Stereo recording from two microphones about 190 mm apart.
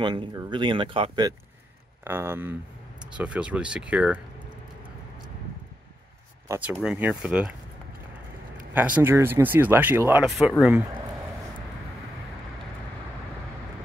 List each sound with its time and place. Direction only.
0.0 s speech: 25° right (ahead or behind)
2.0 s speech: 10° right (ahead or behind)
6.4 s speech: 15° right (ahead or behind)
6.7 s speech: 5° right (ahead or behind)
8.7 s speech: 10° right (ahead or behind)